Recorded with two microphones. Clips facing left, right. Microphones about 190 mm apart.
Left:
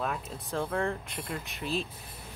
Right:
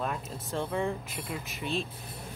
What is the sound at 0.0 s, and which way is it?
Speech, centre (ahead or behind).